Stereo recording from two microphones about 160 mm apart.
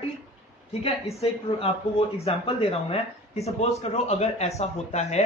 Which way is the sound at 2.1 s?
40° left (ahead or behind).